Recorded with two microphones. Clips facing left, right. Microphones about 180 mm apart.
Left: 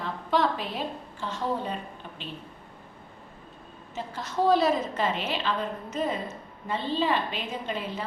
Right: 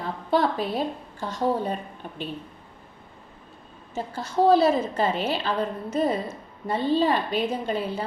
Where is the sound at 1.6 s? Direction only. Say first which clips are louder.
Right 4 dB; 45° right (ahead or behind).